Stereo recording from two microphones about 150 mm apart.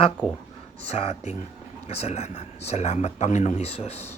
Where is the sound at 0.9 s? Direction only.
45° left (ahead or behind).